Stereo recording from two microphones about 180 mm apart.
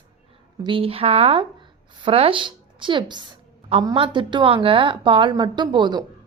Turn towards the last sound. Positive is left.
turn(degrees=-25)  # may be behind; listen again after turning